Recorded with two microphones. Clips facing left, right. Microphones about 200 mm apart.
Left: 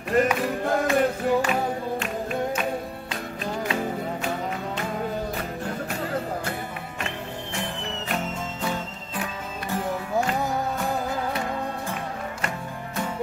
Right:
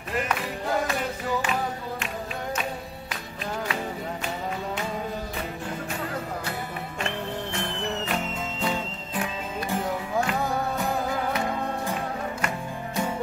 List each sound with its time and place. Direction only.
0.1 s music: 45° left (ahead or behind)